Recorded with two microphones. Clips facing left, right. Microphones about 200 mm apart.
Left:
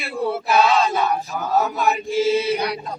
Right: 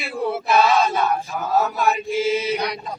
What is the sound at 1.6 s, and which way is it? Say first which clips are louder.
Chant: even; centre (ahead or behind).